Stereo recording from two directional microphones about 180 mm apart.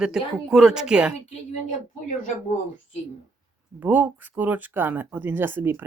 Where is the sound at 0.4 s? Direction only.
5° right (ahead or behind).